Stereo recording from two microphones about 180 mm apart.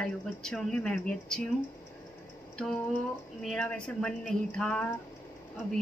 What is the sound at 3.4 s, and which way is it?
Speech, 5° left (ahead or behind).